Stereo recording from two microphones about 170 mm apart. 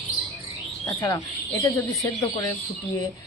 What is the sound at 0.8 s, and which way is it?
Speech, 20° left (ahead or behind).